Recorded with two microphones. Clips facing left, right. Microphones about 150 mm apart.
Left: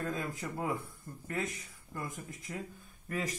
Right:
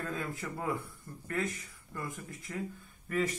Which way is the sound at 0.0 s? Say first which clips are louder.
Left 1 dB; 15° left (ahead or behind).